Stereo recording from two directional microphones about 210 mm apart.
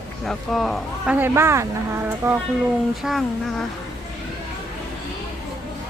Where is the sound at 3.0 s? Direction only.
Centre (ahead or behind).